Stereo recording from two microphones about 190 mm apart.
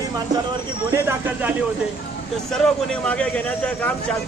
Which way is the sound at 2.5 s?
5° left (ahead or behind).